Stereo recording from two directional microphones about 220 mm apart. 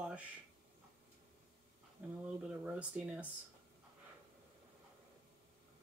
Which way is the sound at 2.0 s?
5° right (ahead or behind).